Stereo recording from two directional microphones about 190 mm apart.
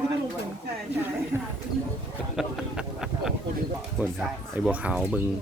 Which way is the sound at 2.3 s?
Centre (ahead or behind).